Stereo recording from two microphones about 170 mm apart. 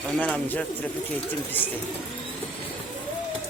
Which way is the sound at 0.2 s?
10° left (ahead or behind).